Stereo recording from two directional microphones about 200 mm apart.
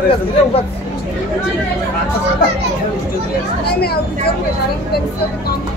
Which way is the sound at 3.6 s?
55° left (ahead or behind).